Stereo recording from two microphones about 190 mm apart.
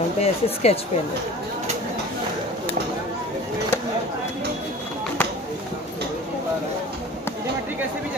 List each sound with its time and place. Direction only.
0.2 s speech: 35° left (ahead or behind)